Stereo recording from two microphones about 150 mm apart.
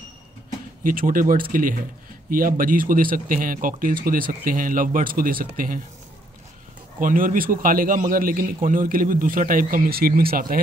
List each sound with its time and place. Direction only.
0.8 s speech: 65° right (ahead or behind)
7.0 s a man's voice: 65° right (ahead or behind)